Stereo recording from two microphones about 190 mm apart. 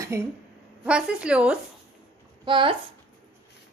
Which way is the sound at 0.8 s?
5° right (ahead or behind).